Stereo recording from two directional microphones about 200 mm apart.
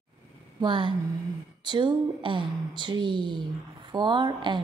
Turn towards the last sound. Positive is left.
turn(degrees=-25)  # may be behind; listen again after turning